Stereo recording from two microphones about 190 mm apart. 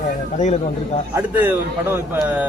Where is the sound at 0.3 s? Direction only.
40° left (ahead or behind).